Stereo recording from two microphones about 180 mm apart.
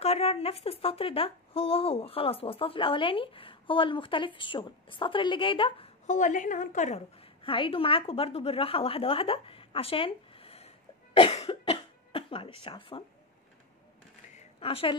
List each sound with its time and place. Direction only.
0.0 s speech: 35° left (ahead or behind)
6.0 s a woman's voice: 45° left (ahead or behind)
11.1 s cough: 35° left (ahead or behind)
14.3 s a sound: 35° left (ahead or behind)